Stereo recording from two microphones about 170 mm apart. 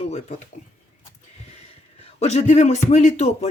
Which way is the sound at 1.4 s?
35° left (ahead or behind).